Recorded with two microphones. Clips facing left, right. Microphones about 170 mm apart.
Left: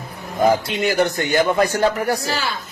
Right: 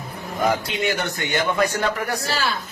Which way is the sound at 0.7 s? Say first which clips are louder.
Left 5 dB; 40° left (ahead or behind).